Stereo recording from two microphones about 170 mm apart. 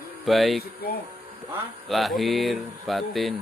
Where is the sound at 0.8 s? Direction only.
65° left (ahead or behind).